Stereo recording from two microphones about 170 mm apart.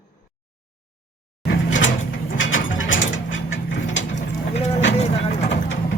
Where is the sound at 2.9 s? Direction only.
90° left.